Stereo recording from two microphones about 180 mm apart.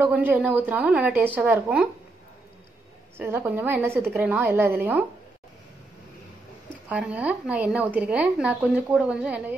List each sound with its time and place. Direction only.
0.0 s a woman's voice: 10° right (ahead or behind)
3.2 s a woman's voice: 15° right (ahead or behind)
6.9 s a woman's voice: 5° right (ahead or behind)